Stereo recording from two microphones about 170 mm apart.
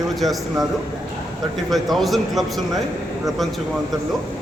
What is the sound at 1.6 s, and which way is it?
Speech, centre (ahead or behind).